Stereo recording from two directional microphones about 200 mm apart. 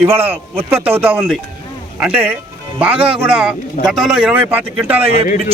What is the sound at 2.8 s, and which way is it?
Speech, 5° right (ahead or behind).